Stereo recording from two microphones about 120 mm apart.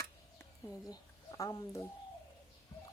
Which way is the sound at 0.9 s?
30° left (ahead or behind).